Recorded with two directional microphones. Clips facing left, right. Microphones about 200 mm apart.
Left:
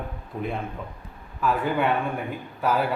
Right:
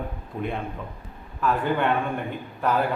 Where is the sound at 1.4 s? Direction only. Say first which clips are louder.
Even; 5° left (ahead or behind).